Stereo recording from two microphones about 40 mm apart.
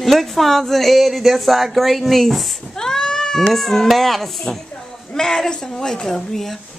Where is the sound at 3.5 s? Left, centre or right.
Centre.